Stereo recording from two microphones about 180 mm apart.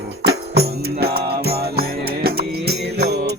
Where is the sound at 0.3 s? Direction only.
65° right (ahead or behind).